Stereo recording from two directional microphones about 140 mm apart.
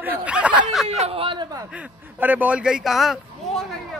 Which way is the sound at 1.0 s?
40° right (ahead or behind).